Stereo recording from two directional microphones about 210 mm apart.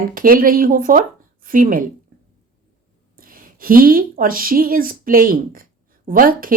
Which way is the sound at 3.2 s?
40° right (ahead or behind).